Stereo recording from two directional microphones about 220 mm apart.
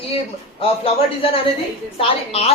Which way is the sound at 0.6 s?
25° left (ahead or behind).